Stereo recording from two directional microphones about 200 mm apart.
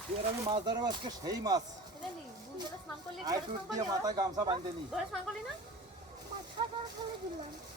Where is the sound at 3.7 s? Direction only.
20° right (ahead or behind).